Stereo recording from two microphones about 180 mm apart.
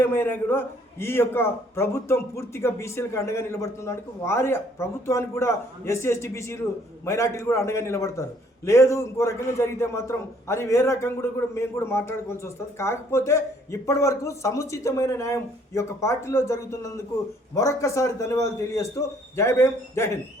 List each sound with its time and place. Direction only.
0.0 s a man's voice: 10° left (ahead or behind)